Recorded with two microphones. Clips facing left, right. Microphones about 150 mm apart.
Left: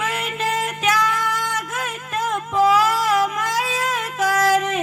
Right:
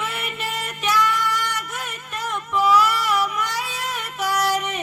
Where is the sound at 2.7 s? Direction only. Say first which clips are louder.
Left 2 dB; 90° left.